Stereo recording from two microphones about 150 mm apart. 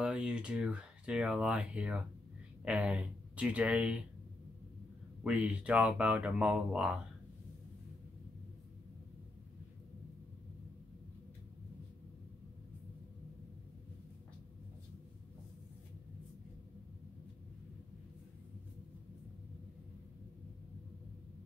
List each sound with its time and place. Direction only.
0.0 s speech: 5° right (ahead or behind)
5.2 s speech: 10° right (ahead or behind)